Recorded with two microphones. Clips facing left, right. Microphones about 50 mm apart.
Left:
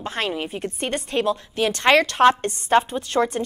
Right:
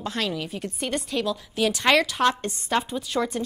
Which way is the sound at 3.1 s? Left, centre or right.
Left.